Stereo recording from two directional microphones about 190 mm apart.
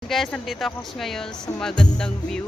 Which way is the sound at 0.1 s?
Centre (ahead or behind).